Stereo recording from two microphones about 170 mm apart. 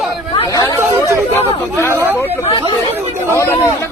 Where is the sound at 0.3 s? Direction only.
25° left (ahead or behind).